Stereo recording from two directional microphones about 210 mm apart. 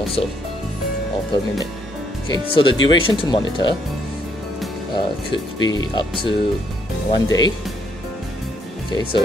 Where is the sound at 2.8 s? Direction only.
70° left (ahead or behind).